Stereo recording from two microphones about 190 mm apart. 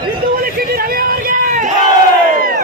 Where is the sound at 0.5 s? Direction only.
50° right (ahead or behind).